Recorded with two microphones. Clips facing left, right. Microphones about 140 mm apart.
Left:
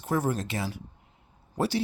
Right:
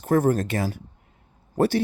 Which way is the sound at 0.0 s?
50° right (ahead or behind).